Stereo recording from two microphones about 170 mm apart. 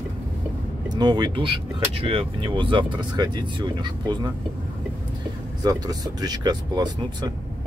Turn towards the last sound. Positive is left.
turn(degrees=-25)  # may be behind; listen again after turning